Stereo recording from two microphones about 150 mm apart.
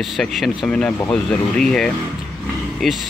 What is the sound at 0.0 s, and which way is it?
Speech, centre (ahead or behind).